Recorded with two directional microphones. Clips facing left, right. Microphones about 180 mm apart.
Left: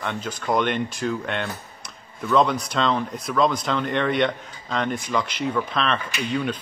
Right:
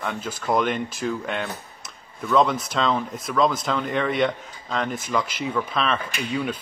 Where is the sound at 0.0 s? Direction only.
5° right (ahead or behind).